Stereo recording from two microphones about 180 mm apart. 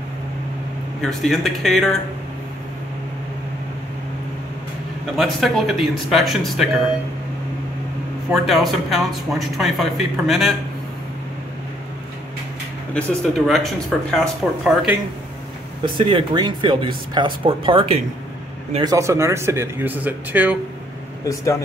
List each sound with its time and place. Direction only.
1.0 s speech: centre (ahead or behind)
5.1 s speech: centre (ahead or behind)
8.3 s speech: centre (ahead or behind)
12.9 s speech: centre (ahead or behind)
15.8 s speech: 25° right (ahead or behind)
18.9 s speech: 15° right (ahead or behind)
21.3 s speech: 15° left (ahead or behind)